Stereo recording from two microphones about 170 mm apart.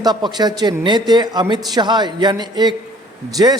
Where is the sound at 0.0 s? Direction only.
25° right (ahead or behind).